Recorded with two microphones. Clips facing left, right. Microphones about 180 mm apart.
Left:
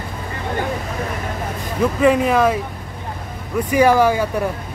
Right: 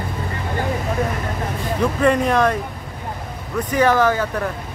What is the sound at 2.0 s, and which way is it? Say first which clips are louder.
Speech: left 2 dB; 5° left (ahead or behind).